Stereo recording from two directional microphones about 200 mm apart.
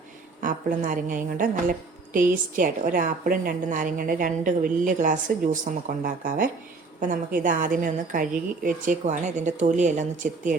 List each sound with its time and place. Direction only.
0.4 s a woman's voice: 40° right (ahead or behind)